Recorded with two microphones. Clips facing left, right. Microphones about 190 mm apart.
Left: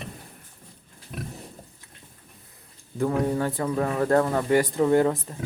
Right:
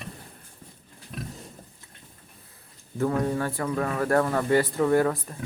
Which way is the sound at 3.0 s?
15° left (ahead or behind).